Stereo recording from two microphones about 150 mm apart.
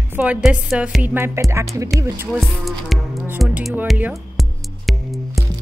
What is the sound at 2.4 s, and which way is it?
Music, centre (ahead or behind).